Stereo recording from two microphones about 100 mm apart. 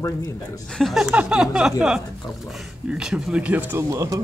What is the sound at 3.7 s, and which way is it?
Speech, 35° right (ahead or behind).